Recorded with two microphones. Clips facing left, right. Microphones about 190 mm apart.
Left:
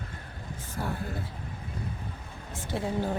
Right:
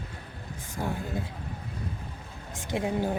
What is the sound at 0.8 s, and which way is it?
Speech, 15° right (ahead or behind).